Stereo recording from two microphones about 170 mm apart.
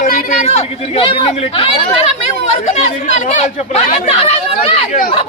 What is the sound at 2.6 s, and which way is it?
Speech, 45° left (ahead or behind).